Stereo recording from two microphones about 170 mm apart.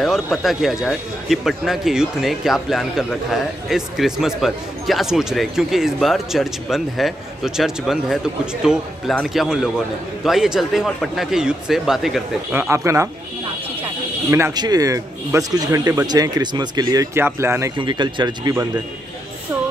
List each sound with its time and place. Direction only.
0.0 s speech: centre (ahead or behind)
12.5 s speech: 15° right (ahead or behind)
14.3 s a man's voice: 20° right (ahead or behind)
17.7 s a man's voice: 25° right (ahead or behind)